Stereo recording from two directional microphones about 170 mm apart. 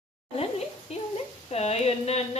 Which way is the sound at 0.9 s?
40° left (ahead or behind).